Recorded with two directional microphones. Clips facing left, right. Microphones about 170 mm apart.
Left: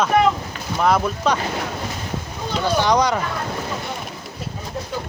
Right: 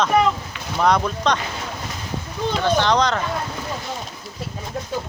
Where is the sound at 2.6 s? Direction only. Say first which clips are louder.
Left 1 dB; 10° left (ahead or behind).